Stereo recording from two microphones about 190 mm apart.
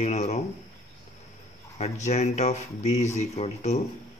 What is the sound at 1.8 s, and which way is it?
Speech, 35° left (ahead or behind).